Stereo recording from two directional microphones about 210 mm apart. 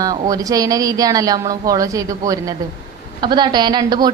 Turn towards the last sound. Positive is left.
turn(degrees=-20)  # may be behind; listen again after turning